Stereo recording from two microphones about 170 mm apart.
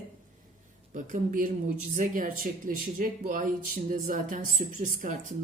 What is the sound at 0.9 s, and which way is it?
Speech, 50° right (ahead or behind).